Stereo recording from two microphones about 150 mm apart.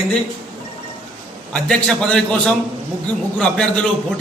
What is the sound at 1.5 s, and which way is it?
A man's voice, 5° left (ahead or behind).